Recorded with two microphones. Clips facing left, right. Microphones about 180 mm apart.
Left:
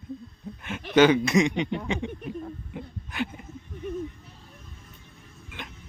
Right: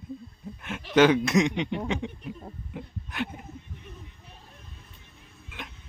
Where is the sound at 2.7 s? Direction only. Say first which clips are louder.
Left 1 dB; centre (ahead or behind).